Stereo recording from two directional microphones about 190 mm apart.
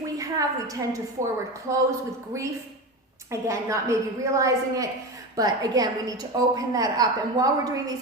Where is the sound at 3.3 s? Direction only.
15° right (ahead or behind).